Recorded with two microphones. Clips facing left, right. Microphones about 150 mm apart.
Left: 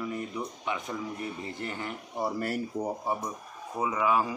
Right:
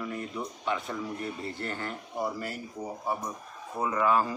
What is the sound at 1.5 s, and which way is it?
Speech, 15° left (ahead or behind).